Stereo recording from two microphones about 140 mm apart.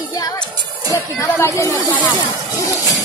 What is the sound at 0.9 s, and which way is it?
Speech, 20° left (ahead or behind).